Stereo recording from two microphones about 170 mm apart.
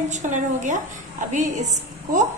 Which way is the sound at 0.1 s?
45° right (ahead or behind).